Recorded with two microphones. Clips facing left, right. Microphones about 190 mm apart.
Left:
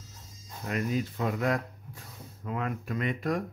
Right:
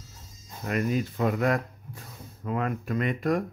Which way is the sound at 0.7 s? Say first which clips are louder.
Right 3 dB; 60° right (ahead or behind).